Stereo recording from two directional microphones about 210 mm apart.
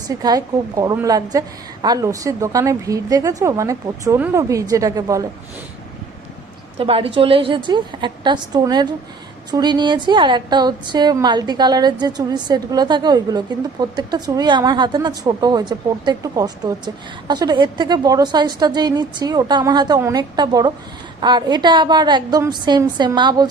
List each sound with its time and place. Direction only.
0.1 s a woman's voice: 15° right (ahead or behind)
6.7 s a woman's voice: 25° right (ahead or behind)